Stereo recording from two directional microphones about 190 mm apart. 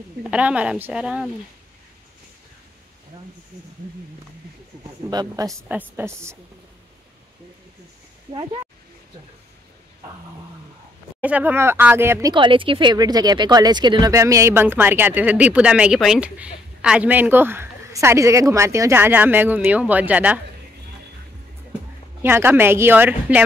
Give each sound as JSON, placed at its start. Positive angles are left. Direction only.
{"t": 0.2, "sound": "speech", "side_deg": -5}
{"t": 5.1, "sound": "a woman's voice", "side_deg": -20}
{"t": 11.1, "sound": "speech", "side_deg": -10}
{"t": 22.2, "sound": "speech", "side_deg": -10}